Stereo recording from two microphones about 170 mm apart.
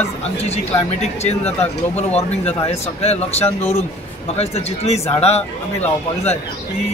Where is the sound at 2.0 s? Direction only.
40° left (ahead or behind).